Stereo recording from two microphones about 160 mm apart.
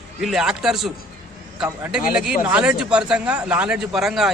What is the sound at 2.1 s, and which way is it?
Speech, 5° right (ahead or behind).